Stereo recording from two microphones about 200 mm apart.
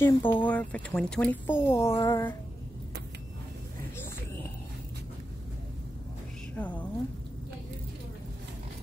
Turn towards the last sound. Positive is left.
turn(degrees=5)  # may be behind; listen again after turning